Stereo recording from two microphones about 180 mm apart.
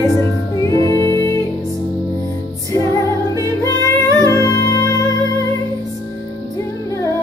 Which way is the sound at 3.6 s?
15° left (ahead or behind).